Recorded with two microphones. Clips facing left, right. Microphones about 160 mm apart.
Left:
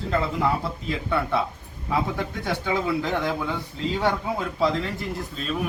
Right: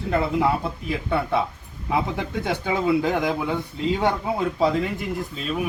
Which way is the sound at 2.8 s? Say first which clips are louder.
Right 4 dB; 15° right (ahead or behind).